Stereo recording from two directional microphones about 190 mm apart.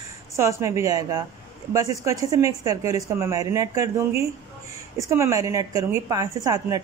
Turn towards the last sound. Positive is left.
turn(degrees=-20)  # may be behind; listen again after turning